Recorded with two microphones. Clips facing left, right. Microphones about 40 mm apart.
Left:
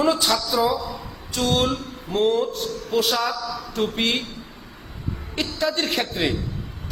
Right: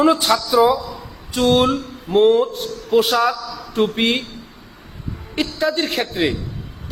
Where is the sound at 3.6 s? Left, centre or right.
Right.